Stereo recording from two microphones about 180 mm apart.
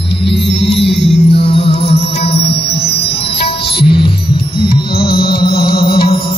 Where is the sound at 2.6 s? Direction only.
65° left (ahead or behind).